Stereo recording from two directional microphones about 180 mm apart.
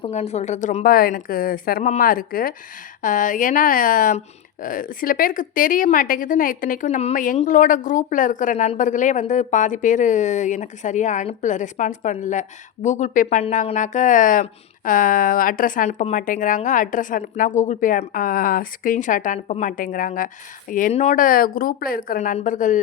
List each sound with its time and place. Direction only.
0.0 s a woman's voice: 35° left (ahead or behind)
0.9 s speech: 55° left (ahead or behind)